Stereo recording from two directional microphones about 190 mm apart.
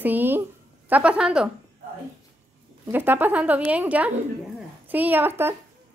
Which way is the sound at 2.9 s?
10° right (ahead or behind).